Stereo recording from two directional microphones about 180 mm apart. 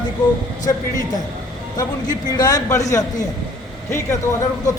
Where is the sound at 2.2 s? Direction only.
20° left (ahead or behind).